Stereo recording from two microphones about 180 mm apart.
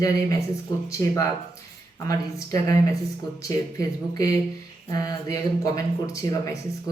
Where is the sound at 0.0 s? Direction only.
20° left (ahead or behind).